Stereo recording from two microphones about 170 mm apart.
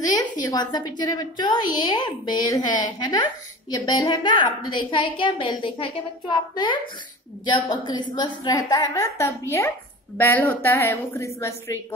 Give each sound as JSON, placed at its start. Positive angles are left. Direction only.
{"t": 0.0, "sound": "a woman's voice", "side_deg": 25}